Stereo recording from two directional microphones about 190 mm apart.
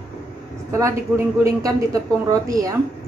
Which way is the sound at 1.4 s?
20° right (ahead or behind).